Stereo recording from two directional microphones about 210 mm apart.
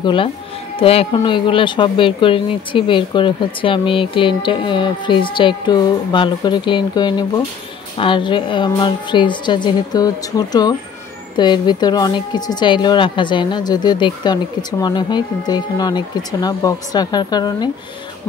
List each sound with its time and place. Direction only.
0.0 s speech: 25° left (ahead or behind)